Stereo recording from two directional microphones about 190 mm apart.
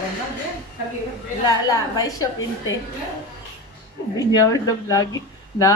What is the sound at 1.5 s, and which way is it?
A woman's voice, 20° left (ahead or behind).